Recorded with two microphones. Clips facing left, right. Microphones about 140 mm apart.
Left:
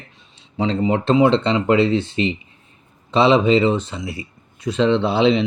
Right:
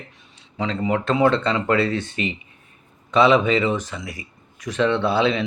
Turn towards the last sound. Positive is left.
turn(degrees=25)  # may be behind; listen again after turning